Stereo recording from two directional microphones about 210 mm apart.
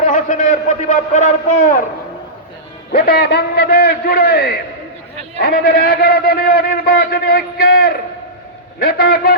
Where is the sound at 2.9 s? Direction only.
50° left (ahead or behind).